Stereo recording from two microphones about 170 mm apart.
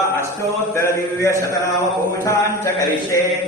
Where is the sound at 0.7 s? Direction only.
15° left (ahead or behind).